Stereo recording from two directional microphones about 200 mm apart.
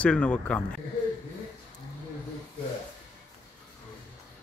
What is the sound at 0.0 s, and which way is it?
Speech, 5° left (ahead or behind).